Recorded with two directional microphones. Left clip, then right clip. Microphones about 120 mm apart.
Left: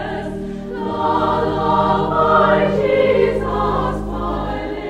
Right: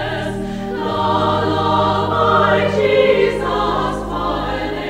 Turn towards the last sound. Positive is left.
turn(degrees=-20)  # may be behind; listen again after turning